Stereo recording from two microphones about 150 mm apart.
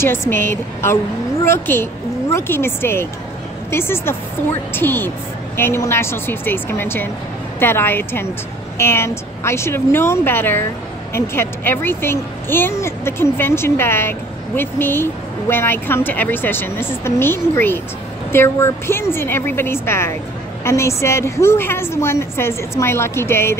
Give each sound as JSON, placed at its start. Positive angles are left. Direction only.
{"t": 0.0, "sound": "a child's voice", "side_deg": 15}